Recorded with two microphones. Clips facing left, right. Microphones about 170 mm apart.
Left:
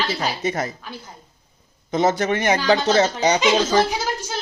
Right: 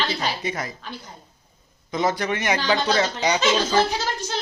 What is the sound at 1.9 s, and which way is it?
Speech, 25° left (ahead or behind).